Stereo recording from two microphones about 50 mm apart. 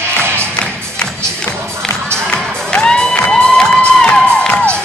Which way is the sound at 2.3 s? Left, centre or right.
Centre.